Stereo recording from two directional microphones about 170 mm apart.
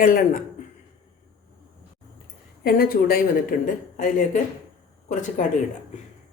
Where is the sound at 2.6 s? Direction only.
60° left (ahead or behind).